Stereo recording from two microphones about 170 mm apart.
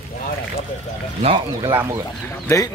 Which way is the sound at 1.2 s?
35° right (ahead or behind).